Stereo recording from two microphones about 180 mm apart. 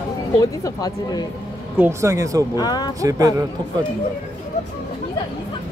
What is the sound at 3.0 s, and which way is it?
Speech, 20° right (ahead or behind).